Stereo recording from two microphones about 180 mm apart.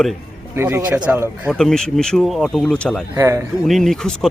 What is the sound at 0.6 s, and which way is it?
Speech, 15° right (ahead or behind).